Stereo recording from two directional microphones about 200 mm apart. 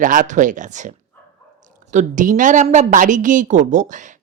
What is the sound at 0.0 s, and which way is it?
A woman's voice, 40° right (ahead or behind).